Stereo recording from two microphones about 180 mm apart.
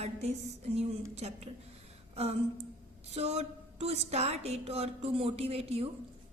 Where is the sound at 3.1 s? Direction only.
35° right (ahead or behind).